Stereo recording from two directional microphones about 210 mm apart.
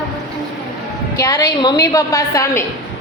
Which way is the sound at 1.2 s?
15° left (ahead or behind).